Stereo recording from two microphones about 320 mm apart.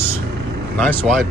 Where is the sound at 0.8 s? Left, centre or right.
Centre.